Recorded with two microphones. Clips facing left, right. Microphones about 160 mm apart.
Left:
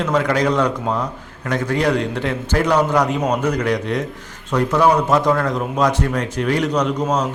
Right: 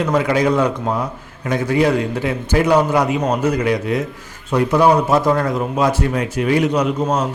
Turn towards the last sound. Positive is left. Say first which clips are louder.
# right 1 dB
turn(degrees=-10)  # may be behind; listen again after turning